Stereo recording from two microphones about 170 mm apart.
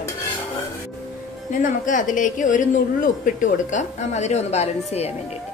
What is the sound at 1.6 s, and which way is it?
A woman's voice, 50° left (ahead or behind).